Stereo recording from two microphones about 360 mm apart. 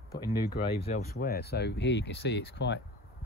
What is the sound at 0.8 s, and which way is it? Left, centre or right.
Speech, left.